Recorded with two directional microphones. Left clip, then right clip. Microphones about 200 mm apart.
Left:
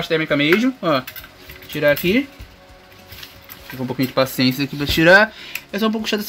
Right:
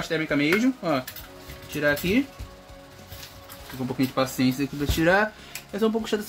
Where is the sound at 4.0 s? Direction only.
50° left (ahead or behind).